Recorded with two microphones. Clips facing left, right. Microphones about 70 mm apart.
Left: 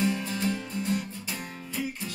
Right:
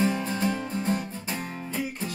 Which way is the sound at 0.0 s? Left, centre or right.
Right.